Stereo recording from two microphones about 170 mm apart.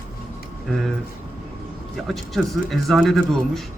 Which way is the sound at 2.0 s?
Centre (ahead or behind).